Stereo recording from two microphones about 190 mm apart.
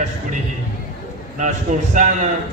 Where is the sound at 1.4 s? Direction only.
40° right (ahead or behind).